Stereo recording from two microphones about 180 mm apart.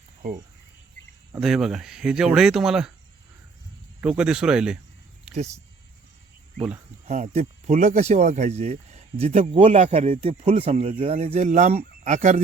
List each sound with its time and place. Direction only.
1.4 s speech: centre (ahead or behind)
4.2 s speech: 5° right (ahead or behind)
5.3 s speech: 40° right (ahead or behind)
7.1 s speech: 40° right (ahead or behind)